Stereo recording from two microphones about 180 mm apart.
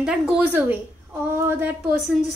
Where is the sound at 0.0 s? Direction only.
5° right (ahead or behind).